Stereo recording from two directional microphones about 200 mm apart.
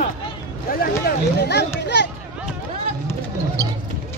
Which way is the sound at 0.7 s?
50° left (ahead or behind).